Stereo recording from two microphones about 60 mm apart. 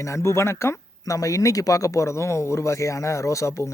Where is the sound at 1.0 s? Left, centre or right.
Left.